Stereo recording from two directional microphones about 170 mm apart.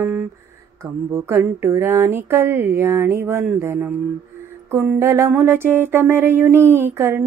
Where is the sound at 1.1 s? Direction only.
15° right (ahead or behind).